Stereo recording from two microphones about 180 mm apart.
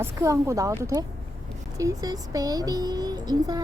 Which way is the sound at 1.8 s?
20° right (ahead or behind).